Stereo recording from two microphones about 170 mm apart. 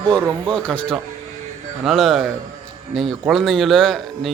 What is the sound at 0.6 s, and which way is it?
Speech, 5° left (ahead or behind).